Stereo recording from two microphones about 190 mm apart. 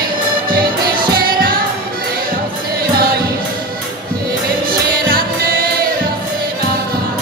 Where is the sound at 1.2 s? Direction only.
50° right (ahead or behind).